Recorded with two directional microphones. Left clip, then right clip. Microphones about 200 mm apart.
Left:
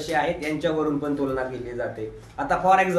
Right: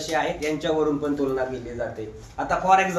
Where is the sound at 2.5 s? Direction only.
15° left (ahead or behind).